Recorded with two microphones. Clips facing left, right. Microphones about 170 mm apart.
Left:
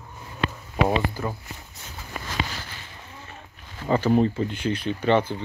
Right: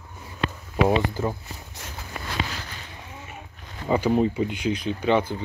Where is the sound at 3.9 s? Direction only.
5° right (ahead or behind).